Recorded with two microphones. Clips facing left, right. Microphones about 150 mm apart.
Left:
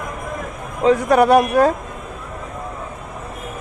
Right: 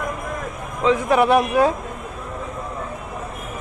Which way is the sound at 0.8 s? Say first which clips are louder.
Left 3 dB; 40° left (ahead or behind).